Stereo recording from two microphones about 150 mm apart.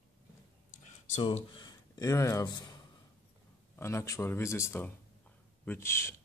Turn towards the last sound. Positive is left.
turn(degrees=15)  # may be behind; listen again after turning